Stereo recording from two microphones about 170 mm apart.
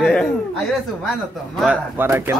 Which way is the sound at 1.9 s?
15° right (ahead or behind).